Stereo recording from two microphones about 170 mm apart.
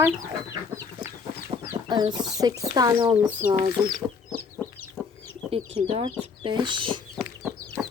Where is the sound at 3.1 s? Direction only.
10° right (ahead or behind).